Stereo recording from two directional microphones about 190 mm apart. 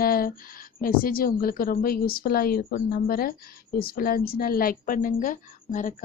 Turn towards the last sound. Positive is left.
turn(degrees=45)  # may be behind; listen again after turning